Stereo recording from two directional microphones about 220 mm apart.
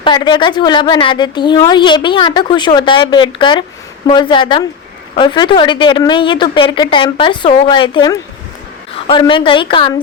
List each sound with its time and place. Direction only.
0.0 s a woman's voice: 20° left (ahead or behind)